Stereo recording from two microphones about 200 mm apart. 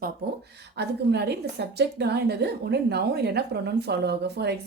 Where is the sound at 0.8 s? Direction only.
55° right (ahead or behind).